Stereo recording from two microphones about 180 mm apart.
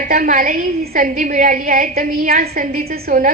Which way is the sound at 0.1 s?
50° right (ahead or behind).